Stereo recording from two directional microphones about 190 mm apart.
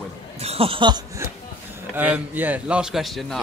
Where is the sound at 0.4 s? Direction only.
30° right (ahead or behind).